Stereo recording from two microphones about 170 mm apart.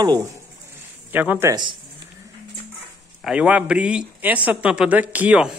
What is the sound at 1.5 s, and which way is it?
Speech, 25° right (ahead or behind).